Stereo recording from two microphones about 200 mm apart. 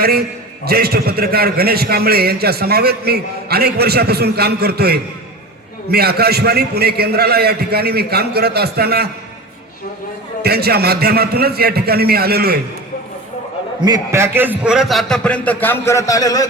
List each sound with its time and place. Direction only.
0.0 s a man's voice: 50° right (ahead or behind)
10.4 s a man's voice: 55° right (ahead or behind)
13.8 s a man's voice: 15° right (ahead or behind); by 16.5 s 20° left (ahead or behind)